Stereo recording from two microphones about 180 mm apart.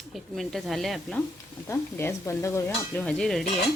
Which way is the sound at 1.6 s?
15° left (ahead or behind).